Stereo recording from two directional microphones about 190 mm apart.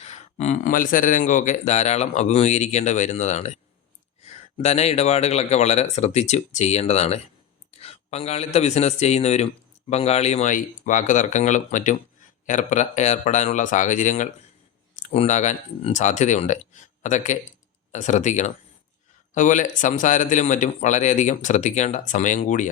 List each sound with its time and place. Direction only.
0.0 s speech: 35° left (ahead or behind)